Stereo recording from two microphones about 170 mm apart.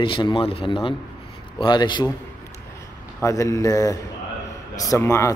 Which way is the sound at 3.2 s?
20° left (ahead or behind).